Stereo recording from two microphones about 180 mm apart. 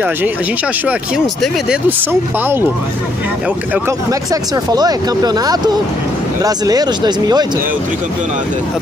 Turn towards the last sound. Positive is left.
turn(degrees=-20)  # may be behind; listen again after turning